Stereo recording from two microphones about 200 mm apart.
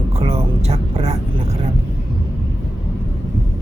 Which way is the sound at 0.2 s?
30° right (ahead or behind).